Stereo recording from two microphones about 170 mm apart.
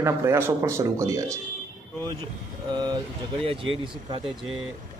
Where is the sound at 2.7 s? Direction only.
25° right (ahead or behind).